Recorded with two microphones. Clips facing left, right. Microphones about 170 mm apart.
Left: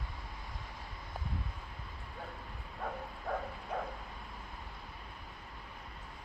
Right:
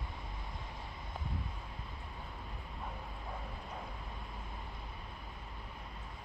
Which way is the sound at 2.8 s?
90° left.